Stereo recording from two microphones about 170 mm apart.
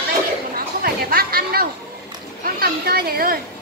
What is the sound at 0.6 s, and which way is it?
Chatter, 60° right (ahead or behind).